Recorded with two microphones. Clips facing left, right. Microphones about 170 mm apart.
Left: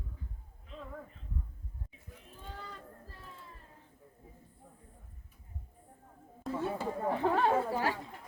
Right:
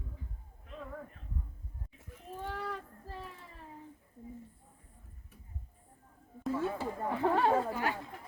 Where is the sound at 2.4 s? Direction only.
75° right (ahead or behind).